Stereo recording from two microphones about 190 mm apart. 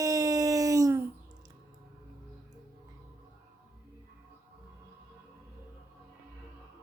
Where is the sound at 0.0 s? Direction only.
20° right (ahead or behind).